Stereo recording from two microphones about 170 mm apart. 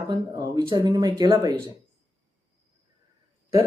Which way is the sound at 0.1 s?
25° right (ahead or behind).